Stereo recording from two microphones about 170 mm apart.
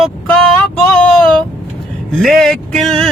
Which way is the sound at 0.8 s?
5° left (ahead or behind).